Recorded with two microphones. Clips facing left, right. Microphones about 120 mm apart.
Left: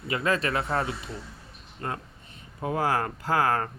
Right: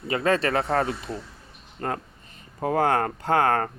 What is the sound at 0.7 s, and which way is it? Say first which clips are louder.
Speech: right 4 dB; 45° right (ahead or behind).